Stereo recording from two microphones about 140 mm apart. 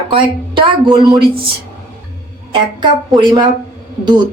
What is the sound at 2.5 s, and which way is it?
Speech, 35° right (ahead or behind).